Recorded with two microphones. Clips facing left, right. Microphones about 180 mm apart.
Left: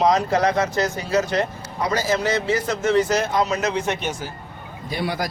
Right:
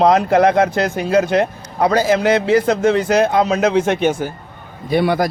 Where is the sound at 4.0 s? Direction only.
55° right (ahead or behind).